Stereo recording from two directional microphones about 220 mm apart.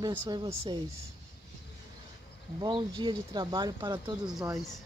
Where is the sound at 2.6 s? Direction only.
20° right (ahead or behind).